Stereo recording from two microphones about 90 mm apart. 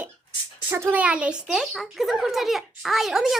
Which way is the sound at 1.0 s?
15° right (ahead or behind).